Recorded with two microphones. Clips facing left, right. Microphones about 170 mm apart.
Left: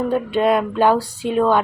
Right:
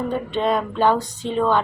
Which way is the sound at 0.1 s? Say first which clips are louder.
Left 5 dB; 10° left (ahead or behind).